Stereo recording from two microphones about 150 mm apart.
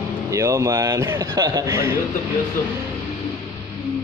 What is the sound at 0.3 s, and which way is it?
A man's voice, 20° right (ahead or behind).